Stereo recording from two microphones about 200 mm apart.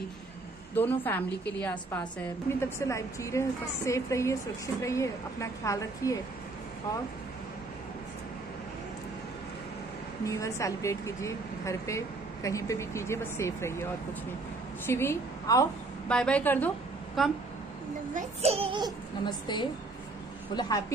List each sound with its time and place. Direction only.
0.7 s a woman's voice: 10° left (ahead or behind)
10.2 s a woman's voice: 15° left (ahead or behind)
14.9 s a woman's voice: 10° left (ahead or behind)
18.1 s speech: 30° right (ahead or behind)
19.2 s a woman's voice: 20° left (ahead or behind)